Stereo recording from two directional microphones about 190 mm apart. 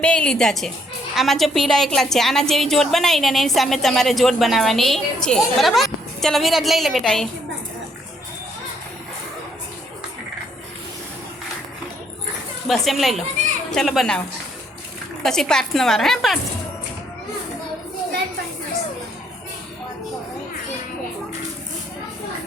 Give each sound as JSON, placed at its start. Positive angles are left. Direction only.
{"t": 0.0, "sound": "a woman's voice", "side_deg": 5}
{"t": 12.6, "sound": "a woman's voice", "side_deg": 0}
{"t": 15.2, "sound": "a woman's voice", "side_deg": 5}